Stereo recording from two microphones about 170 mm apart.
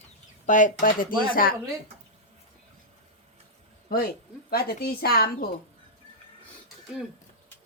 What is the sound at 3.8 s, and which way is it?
Speech, 60° left (ahead or behind).